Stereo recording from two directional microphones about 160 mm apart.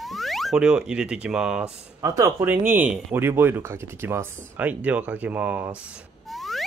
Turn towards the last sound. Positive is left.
turn(degrees=0)  # may be behind; listen again after turning